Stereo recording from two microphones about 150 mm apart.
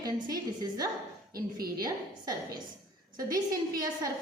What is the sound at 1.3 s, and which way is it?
Speech, 85° right.